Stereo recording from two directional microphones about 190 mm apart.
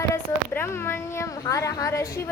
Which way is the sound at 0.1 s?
10° left (ahead or behind).